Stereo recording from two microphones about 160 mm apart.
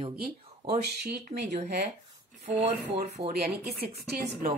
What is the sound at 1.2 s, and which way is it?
A woman's voice, 45° right (ahead or behind).